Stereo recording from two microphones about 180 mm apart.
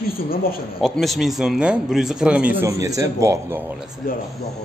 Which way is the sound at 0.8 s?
Centre (ahead or behind).